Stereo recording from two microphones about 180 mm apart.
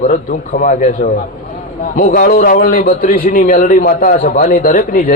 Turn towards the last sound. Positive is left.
turn(degrees=50)  # may be behind; listen again after turning